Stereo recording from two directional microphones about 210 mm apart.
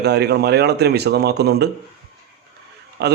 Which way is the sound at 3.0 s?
50° right (ahead or behind).